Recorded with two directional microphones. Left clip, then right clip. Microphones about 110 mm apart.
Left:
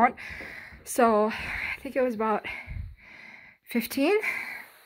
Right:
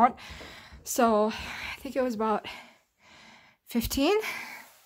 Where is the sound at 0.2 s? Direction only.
5° right (ahead or behind).